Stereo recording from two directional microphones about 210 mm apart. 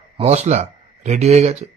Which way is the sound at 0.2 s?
30° right (ahead or behind).